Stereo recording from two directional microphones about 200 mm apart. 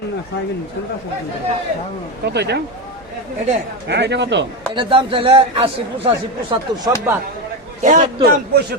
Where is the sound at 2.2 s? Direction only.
55° right (ahead or behind).